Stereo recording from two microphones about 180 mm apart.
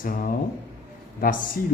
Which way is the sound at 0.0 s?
50° left (ahead or behind).